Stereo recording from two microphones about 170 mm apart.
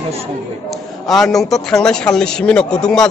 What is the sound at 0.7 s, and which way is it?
A man's voice, centre (ahead or behind).